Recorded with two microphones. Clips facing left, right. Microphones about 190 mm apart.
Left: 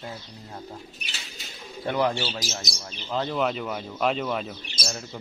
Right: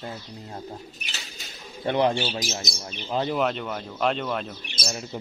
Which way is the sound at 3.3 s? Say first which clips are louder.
Right 1 dB; centre (ahead or behind).